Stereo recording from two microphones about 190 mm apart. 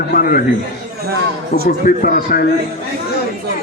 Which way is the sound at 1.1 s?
50° right (ahead or behind).